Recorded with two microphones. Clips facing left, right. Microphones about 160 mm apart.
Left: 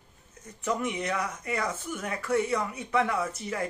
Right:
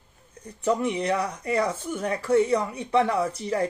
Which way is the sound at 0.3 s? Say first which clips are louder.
Right 6 dB; 30° right (ahead or behind).